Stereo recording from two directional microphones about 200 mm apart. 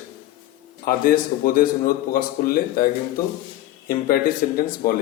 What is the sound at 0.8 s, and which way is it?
Speech, 45° left (ahead or behind).